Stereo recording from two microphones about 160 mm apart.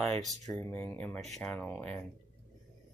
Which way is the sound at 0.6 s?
15° left (ahead or behind).